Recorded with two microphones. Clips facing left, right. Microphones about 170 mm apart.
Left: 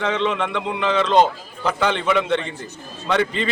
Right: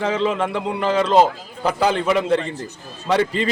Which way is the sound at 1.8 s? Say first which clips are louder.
Right 2 dB; 35° right (ahead or behind).